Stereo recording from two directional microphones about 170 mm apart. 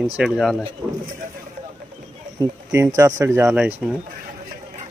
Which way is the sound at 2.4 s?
25° right (ahead or behind).